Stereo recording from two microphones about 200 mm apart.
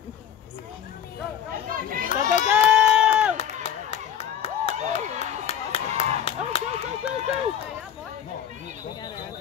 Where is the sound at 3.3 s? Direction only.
30° left (ahead or behind).